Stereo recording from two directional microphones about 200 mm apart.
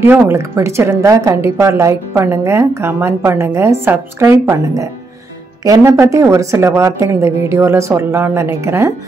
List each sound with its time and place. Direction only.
0.0 s a woman's voice: 10° right (ahead or behind)